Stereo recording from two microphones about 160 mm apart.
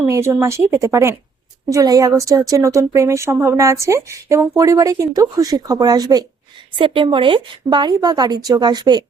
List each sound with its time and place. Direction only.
0.0 s speech: 15° right (ahead or behind)